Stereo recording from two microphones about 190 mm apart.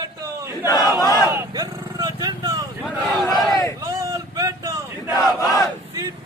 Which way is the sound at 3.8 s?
15° right (ahead or behind).